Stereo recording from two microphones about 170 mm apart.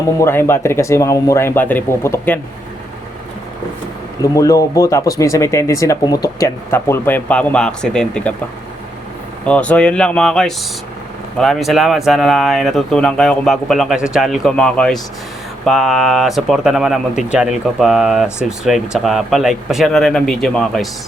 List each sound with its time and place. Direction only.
0.2 s speech: 15° left (ahead or behind)
4.2 s speech: 20° left (ahead or behind)
9.5 s speech: 5° left (ahead or behind)